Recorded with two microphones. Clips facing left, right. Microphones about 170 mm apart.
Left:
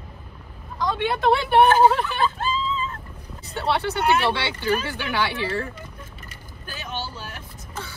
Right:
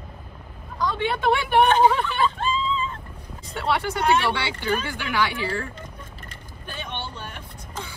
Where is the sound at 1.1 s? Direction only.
30° left (ahead or behind).